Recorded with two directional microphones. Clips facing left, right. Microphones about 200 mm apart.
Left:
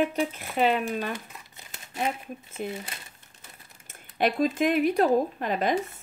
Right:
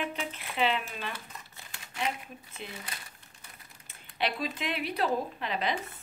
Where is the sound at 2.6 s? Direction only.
45° left (ahead or behind).